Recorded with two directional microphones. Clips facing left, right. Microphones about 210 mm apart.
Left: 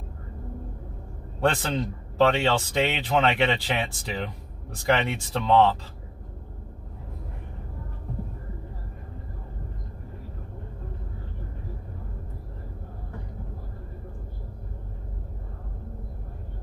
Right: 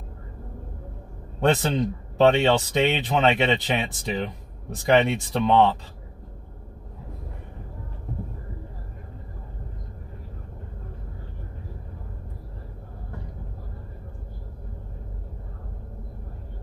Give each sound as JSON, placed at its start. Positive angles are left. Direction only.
{"t": 1.4, "sound": "speech", "side_deg": -20}